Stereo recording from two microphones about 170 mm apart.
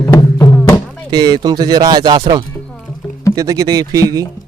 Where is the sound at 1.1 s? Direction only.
25° right (ahead or behind).